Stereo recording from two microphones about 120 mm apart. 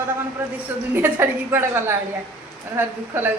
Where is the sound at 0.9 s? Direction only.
20° right (ahead or behind).